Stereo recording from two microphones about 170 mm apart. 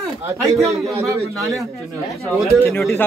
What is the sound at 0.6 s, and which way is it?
Speech, 15° right (ahead or behind).